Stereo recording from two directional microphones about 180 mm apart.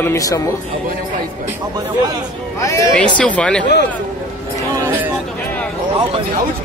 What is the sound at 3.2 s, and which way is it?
Speech, 5° left (ahead or behind).